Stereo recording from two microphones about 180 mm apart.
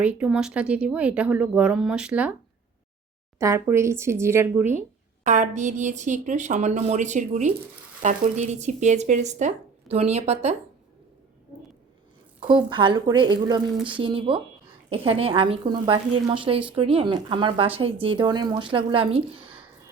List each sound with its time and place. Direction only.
0.0 s speech: 5° right (ahead or behind)
3.3 s speech: 15° right (ahead or behind)
5.2 s a woman's voice: 45° right (ahead or behind)
12.5 s a woman's voice: 25° right (ahead or behind)